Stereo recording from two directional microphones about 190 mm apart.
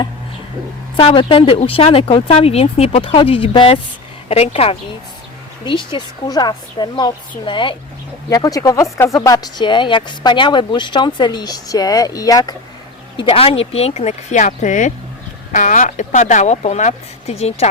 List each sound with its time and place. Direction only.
0.9 s speech: 25° left (ahead or behind)
13.2 s speech: 30° left (ahead or behind)